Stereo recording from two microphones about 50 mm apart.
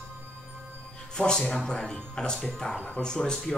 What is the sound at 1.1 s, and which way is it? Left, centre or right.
Speech, centre.